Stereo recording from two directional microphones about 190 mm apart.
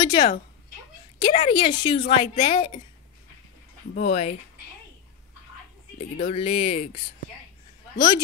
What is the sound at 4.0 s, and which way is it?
Speech, 35° left (ahead or behind).